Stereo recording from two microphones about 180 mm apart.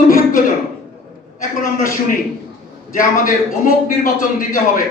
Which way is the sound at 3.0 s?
50° left (ahead or behind).